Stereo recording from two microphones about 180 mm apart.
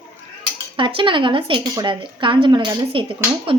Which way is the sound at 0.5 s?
30° right (ahead or behind).